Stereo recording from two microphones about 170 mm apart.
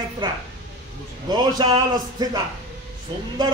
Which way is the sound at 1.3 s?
25° right (ahead or behind).